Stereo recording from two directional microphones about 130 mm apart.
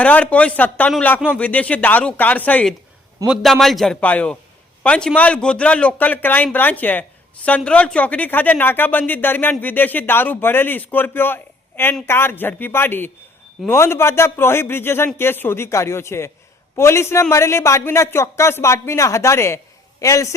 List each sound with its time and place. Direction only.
0.0 s speech: 10° left (ahead or behind)
3.2 s a man's voice: centre (ahead or behind); by 20.3 s 25° left (ahead or behind)